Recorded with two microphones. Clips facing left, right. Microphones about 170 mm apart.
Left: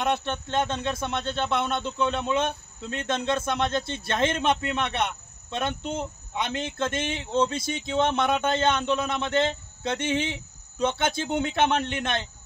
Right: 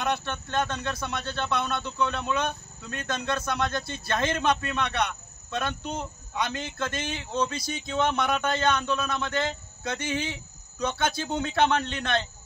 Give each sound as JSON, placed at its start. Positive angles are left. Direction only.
{"t": 0.0, "sound": "speech", "side_deg": 20}